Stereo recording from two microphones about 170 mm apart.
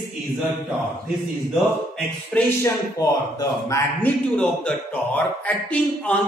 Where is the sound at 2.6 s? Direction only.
20° left (ahead or behind).